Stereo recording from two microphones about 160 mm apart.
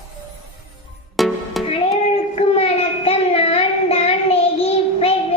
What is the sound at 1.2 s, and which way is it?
Music, centre (ahead or behind).